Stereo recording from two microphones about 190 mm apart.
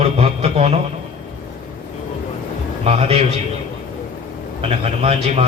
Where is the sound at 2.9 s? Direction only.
30° right (ahead or behind).